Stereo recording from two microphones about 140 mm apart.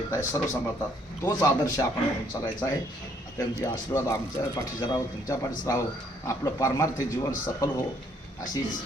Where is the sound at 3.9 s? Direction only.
25° left (ahead or behind).